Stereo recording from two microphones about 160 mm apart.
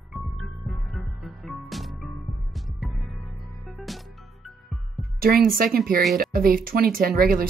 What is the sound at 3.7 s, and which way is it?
Music, centre (ahead or behind).